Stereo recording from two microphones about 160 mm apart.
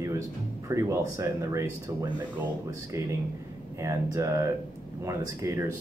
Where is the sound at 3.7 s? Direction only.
20° right (ahead or behind).